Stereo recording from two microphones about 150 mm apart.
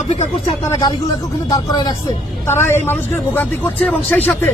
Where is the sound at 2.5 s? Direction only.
15° left (ahead or behind).